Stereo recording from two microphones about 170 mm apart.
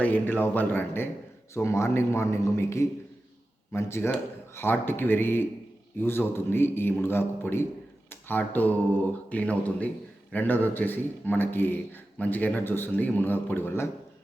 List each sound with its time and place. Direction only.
0.0 s speech: 10° left (ahead or behind)